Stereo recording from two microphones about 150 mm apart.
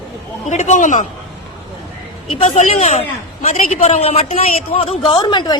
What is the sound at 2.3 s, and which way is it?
A man's voice, 45° left (ahead or behind).